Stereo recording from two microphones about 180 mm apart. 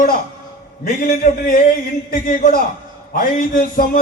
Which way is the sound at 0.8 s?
50° left (ahead or behind).